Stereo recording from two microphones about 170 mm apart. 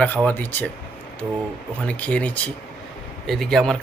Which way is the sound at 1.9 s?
10° left (ahead or behind).